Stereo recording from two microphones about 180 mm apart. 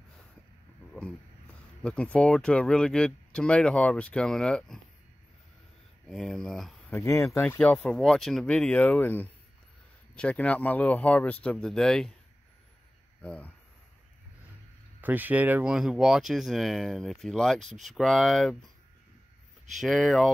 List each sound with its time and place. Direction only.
1.8 s speech: 5° left (ahead or behind)
6.0 s speech: centre (ahead or behind)
6.9 s speech: 15° left (ahead or behind)
13.2 s speech: 10° left (ahead or behind)
15.0 s speech: 10° right (ahead or behind)
17.6 s speech: 40° right (ahead or behind)
17.8 s speech: centre (ahead or behind)
19.8 s speech: centre (ahead or behind)